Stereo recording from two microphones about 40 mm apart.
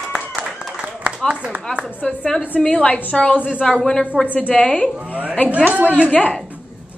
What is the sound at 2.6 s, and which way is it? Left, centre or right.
Speech, left.